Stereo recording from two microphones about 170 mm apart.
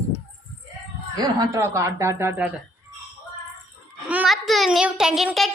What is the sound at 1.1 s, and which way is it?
Speech, 25° right (ahead or behind).